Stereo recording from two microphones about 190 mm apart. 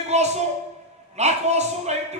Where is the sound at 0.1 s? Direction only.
35° right (ahead or behind).